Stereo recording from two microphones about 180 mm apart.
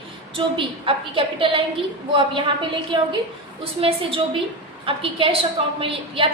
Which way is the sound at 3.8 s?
25° right (ahead or behind).